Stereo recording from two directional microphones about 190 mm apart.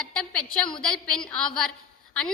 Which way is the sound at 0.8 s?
5° left (ahead or behind).